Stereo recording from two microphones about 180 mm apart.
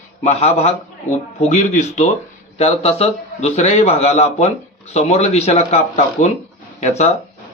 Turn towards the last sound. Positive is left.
turn(degrees=40)  # may be behind; listen again after turning